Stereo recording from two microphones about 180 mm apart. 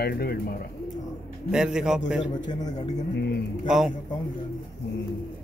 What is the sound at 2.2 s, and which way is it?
Speech, 25° left (ahead or behind).